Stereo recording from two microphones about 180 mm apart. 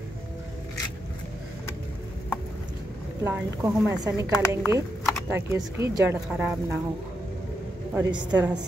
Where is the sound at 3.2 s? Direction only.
10° right (ahead or behind).